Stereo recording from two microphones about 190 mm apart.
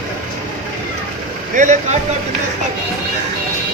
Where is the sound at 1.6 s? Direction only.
40° right (ahead or behind).